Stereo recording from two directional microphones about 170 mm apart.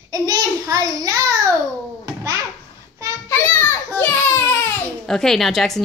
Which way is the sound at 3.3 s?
15° left (ahead or behind).